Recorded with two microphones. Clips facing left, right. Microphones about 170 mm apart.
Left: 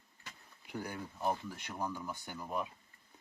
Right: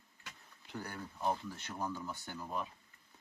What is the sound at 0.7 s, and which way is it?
Speech, 10° left (ahead or behind).